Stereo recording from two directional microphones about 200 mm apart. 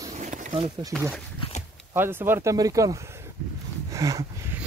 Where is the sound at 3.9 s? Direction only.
15° right (ahead or behind).